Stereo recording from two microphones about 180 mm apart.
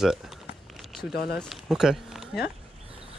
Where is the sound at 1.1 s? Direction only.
60° left (ahead or behind).